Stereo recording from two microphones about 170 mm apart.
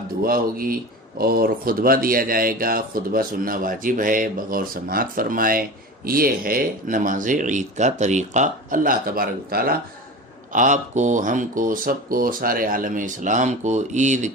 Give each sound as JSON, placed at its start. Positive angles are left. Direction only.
{"t": 0.2, "sound": "speech", "side_deg": -60}
{"t": 10.5, "sound": "speech", "side_deg": -50}